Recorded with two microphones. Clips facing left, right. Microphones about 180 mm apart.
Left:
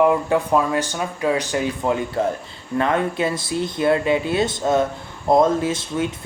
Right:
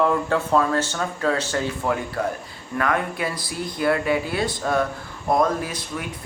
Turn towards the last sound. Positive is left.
turn(degrees=25)  # may be behind; listen again after turning